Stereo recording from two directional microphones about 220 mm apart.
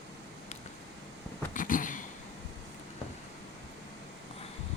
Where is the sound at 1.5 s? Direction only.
35° left (ahead or behind).